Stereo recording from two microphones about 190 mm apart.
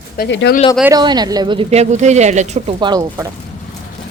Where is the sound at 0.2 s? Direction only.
65° left (ahead or behind).